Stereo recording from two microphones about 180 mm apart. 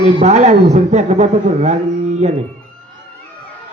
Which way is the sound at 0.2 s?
40° right (ahead or behind).